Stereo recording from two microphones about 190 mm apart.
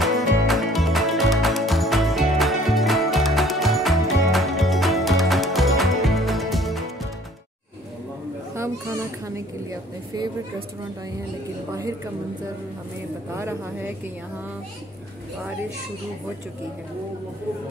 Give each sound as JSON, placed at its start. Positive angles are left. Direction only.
{"t": 0.0, "sound": "music", "side_deg": 0}
{"t": 8.5, "sound": "speech", "side_deg": -15}
{"t": 13.3, "sound": "speech", "side_deg": -15}